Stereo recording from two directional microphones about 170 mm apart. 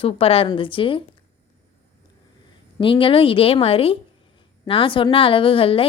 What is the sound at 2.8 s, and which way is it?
A woman's voice, 30° left (ahead or behind).